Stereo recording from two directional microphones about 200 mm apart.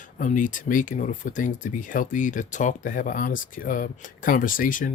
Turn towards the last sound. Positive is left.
turn(degrees=40)  # may be behind; listen again after turning